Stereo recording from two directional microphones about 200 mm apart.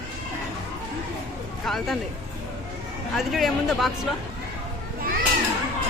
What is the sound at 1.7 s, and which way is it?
Speech, centre (ahead or behind).